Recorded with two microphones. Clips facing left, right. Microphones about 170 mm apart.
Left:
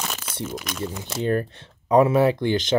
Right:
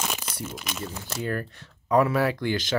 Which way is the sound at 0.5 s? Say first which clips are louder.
Left 4 dB; 5° right (ahead or behind).